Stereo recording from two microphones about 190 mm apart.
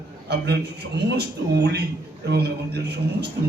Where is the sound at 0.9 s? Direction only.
60° right (ahead or behind).